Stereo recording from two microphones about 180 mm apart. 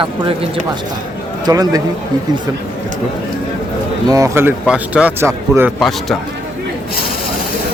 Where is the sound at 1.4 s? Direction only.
20° right (ahead or behind).